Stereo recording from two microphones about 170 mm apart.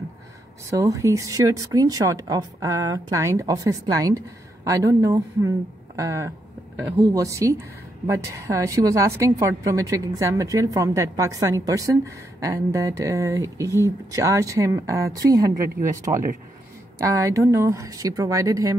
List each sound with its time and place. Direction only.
0.7 s a woman's voice: 20° right (ahead or behind)